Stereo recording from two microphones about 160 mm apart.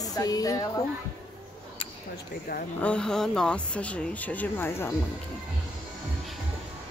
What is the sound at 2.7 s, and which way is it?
A woman's voice, 5° left (ahead or behind).